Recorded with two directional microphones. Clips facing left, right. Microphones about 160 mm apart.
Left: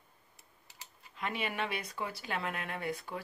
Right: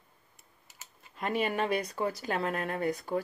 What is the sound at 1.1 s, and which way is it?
Speech, 45° right (ahead or behind).